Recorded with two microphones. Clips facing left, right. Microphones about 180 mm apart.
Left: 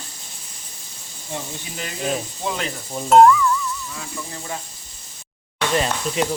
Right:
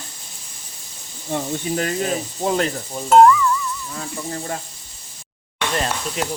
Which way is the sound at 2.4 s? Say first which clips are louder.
Right 8 dB; 40° right (ahead or behind).